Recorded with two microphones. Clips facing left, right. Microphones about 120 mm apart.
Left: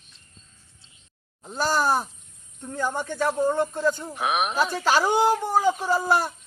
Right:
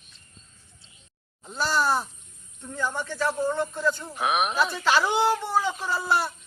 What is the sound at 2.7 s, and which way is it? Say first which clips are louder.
Speech: left 2 dB; 45° left (ahead or behind).